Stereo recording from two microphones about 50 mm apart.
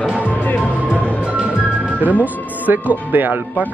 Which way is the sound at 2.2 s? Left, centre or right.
Right.